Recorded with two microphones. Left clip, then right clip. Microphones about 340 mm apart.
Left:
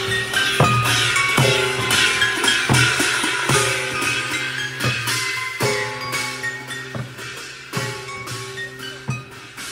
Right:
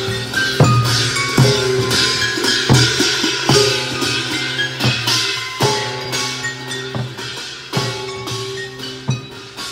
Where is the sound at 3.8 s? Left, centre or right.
Centre.